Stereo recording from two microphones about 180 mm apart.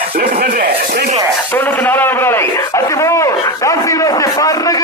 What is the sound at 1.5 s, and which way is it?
A man's voice, 10° left (ahead or behind).